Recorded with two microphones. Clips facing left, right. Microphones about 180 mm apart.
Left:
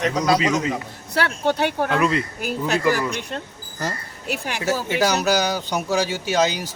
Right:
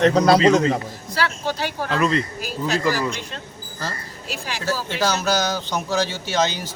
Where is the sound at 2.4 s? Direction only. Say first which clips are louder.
Left 1 dB; 60° left (ahead or behind).